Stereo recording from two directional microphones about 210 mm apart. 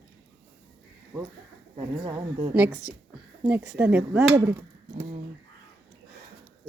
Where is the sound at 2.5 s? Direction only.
5° right (ahead or behind).